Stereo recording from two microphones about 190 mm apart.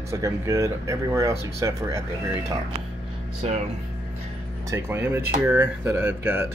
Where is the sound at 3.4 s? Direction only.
35° right (ahead or behind).